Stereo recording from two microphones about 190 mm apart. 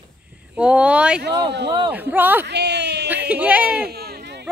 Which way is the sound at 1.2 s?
65° right (ahead or behind).